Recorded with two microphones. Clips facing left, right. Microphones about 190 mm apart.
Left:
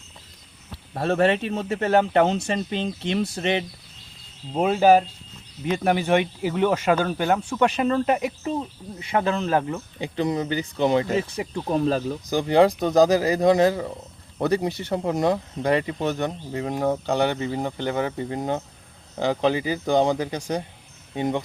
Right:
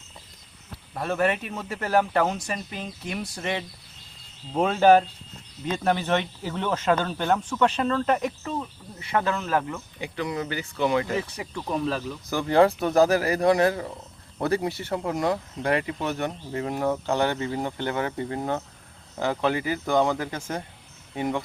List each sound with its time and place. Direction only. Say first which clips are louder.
0.9 s speech: left 4 dB; 30° left (ahead or behind)
4.5 s speech: left 1 dB; 10° left (ahead or behind); by 12.1 s 35° left (ahead or behind)
12.2 s speech: left 1 dB; 15° left (ahead or behind)